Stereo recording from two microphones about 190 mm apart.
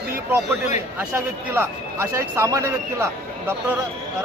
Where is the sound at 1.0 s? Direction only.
10° right (ahead or behind).